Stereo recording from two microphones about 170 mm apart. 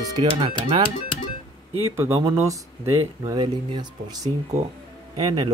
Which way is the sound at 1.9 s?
15° right (ahead or behind).